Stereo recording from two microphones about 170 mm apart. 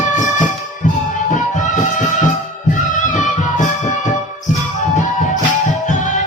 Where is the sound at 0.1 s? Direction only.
50° left (ahead or behind).